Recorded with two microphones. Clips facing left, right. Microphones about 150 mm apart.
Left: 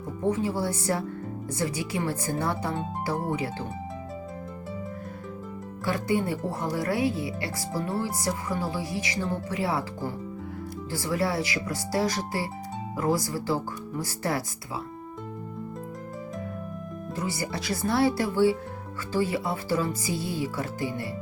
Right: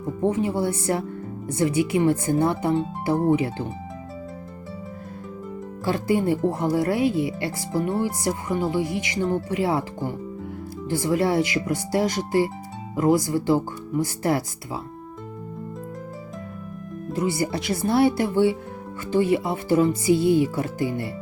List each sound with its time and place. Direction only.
0.3 s speech: 25° right (ahead or behind)
2.0 s speech: 25° right (ahead or behind)
5.8 s speech: 25° right (ahead or behind)
17.2 s speech: 25° right (ahead or behind)